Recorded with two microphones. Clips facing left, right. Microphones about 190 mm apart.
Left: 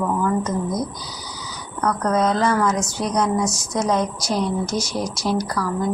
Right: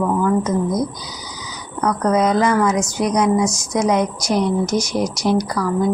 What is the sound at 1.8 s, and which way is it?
A woman's voice, 15° right (ahead or behind).